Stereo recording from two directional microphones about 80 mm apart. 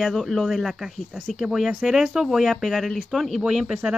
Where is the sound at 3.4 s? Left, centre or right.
Centre.